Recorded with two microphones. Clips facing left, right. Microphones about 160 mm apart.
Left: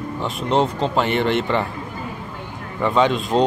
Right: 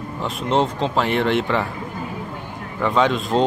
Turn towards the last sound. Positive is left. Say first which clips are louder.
# left 1 dB
turn(degrees=0)  # may be behind; listen again after turning